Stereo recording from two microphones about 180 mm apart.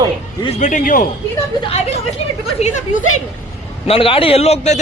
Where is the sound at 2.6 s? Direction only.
40° left (ahead or behind).